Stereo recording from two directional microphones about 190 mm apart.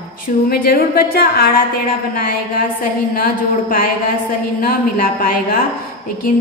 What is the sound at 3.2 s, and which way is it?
A woman's voice, 50° left (ahead or behind).